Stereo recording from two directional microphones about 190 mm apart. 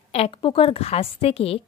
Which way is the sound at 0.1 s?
30° left (ahead or behind).